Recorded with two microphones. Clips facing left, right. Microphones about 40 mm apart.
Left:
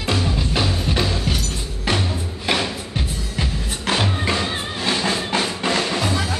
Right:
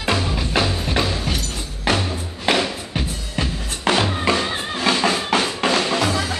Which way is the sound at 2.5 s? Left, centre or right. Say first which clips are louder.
Right 3 dB; right.